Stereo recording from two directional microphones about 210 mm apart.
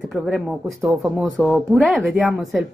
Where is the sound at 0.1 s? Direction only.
Centre (ahead or behind).